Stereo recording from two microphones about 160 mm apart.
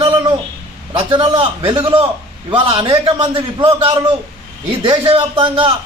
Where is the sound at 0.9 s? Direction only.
30° right (ahead or behind).